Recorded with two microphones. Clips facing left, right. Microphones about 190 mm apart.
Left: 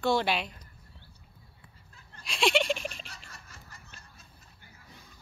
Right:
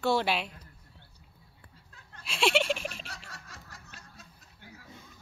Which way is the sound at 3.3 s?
75° right (ahead or behind).